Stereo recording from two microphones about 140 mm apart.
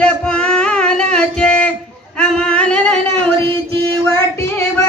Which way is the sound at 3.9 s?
15° left (ahead or behind).